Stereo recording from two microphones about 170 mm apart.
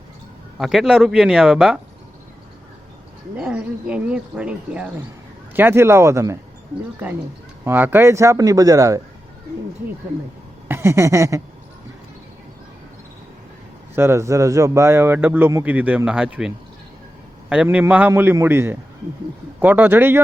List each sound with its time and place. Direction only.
0.6 s speech: centre (ahead or behind)
3.3 s speech: 5° right (ahead or behind)
7.6 s speech: 10° right (ahead or behind)
10.7 s a sound: 15° right (ahead or behind)
13.9 s speech: 15° right (ahead or behind)
17.5 s speech: 5° right (ahead or behind)